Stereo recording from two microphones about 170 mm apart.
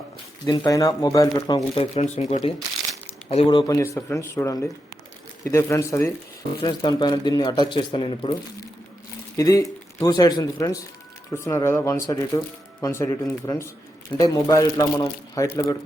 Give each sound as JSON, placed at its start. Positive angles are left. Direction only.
{"t": 0.4, "sound": "speech", "side_deg": 25}
{"t": 1.7, "sound": "speech", "side_deg": 40}
{"t": 3.2, "sound": "speech", "side_deg": 30}
{"t": 9.4, "sound": "speech", "side_deg": 20}